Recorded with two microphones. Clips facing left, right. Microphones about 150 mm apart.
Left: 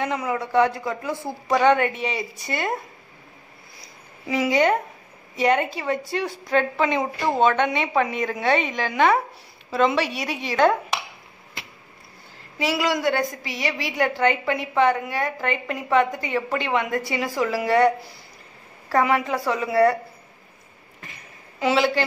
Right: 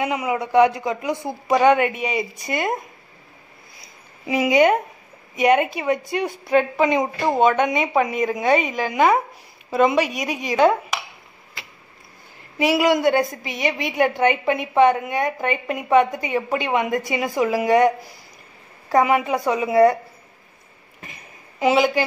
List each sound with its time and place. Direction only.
0.0 s a woman's voice: 10° right (ahead or behind)
4.3 s a woman's voice: 15° right (ahead or behind)
12.5 s a woman's voice: 20° right (ahead or behind)
21.0 s a sound: 20° right (ahead or behind)